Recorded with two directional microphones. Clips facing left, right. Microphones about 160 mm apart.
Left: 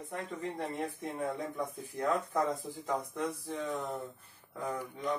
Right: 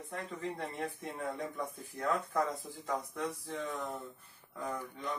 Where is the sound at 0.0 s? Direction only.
15° left (ahead or behind).